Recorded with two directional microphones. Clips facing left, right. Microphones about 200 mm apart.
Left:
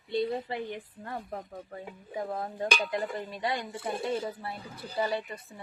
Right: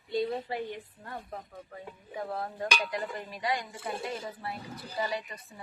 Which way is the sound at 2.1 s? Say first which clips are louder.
Left 1 dB; 15° left (ahead or behind).